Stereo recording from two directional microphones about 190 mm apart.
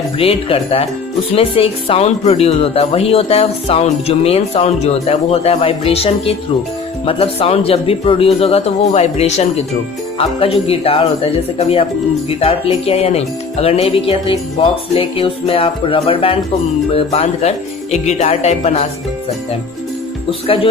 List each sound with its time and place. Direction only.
0.2 s speech: 30° left (ahead or behind)